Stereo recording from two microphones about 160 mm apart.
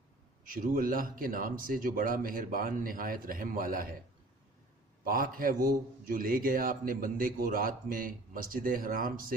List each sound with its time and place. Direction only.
0.4 s a man's voice: 60° right (ahead or behind)
5.0 s a man's voice: 60° right (ahead or behind)